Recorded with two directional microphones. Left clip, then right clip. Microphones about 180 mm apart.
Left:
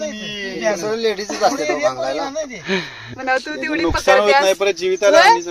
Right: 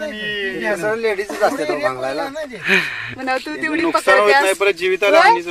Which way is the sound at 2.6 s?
15° left (ahead or behind).